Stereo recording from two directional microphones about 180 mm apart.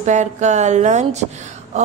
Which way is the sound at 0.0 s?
40° right (ahead or behind).